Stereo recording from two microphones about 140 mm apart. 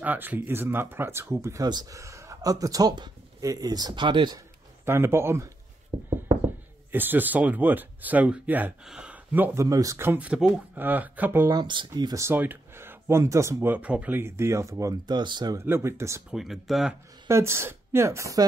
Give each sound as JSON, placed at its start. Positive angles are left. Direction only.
{"t": 0.0, "sound": "speech", "side_deg": -10}
{"t": 4.8, "sound": "speech", "side_deg": -15}
{"t": 5.9, "sound": "a sound", "side_deg": -40}
{"t": 6.9, "sound": "speech", "side_deg": -15}
{"t": 11.5, "sound": "speech", "side_deg": -35}
{"t": 15.6, "sound": "speech", "side_deg": -20}
{"t": 16.3, "sound": "speech", "side_deg": 0}
{"t": 17.3, "sound": "speech", "side_deg": -20}